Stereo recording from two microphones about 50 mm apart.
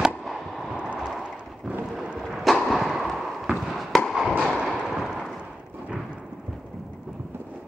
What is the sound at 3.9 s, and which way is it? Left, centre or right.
Fireworks, centre.